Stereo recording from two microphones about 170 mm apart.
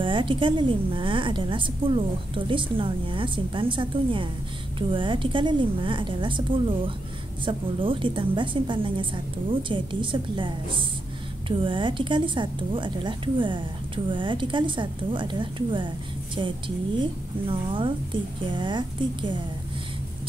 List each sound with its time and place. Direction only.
0.0 s a woman's voice: 30° right (ahead or behind)